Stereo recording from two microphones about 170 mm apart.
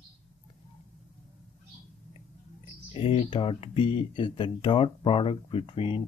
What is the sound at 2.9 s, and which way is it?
Speech, 30° left (ahead or behind).